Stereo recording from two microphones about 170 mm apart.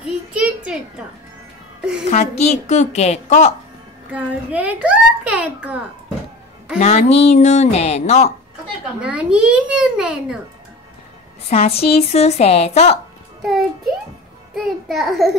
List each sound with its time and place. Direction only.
0.0 s a sound: 5° right (ahead or behind)
2.0 s a woman's voice: 40° left (ahead or behind)
4.1 s a child's voice: 10° right (ahead or behind)
6.8 s a woman's voice: 35° left (ahead or behind)
9.0 s a child's voice: 5° right (ahead or behind)
11.4 s a woman's voice: 35° left (ahead or behind)
13.4 s a child's voice: centre (ahead or behind)